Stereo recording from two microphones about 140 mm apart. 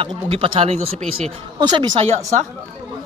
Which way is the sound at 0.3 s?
40° right (ahead or behind).